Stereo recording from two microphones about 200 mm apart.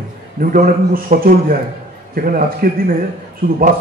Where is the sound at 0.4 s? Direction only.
45° right (ahead or behind).